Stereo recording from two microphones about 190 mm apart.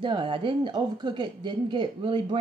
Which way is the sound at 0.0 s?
25° right (ahead or behind).